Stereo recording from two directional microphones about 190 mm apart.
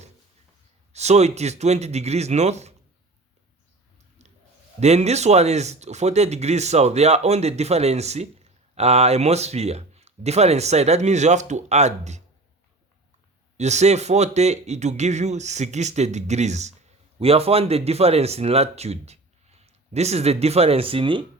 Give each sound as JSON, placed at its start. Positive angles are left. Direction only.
{"t": 0.9, "sound": "speech", "side_deg": -35}
{"t": 4.2, "sound": "clicking", "side_deg": -35}
{"t": 4.8, "sound": "speech", "side_deg": -35}
{"t": 13.6, "sound": "speech", "side_deg": -35}